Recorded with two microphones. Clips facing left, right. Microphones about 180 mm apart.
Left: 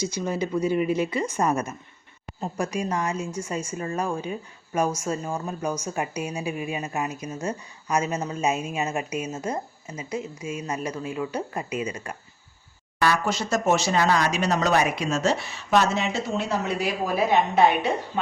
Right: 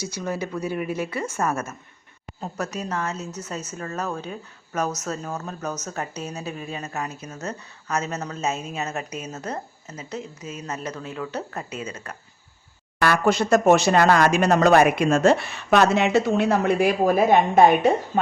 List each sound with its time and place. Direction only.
0.2 s a woman's voice: 15° left (ahead or behind)
0.8 s speech: 5° right (ahead or behind)
1.1 s a woman's voice: 15° left (ahead or behind)
13.0 s speech: 55° right (ahead or behind)